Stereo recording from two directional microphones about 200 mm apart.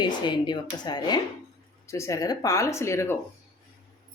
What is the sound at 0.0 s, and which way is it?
Speech, 20° left (ahead or behind).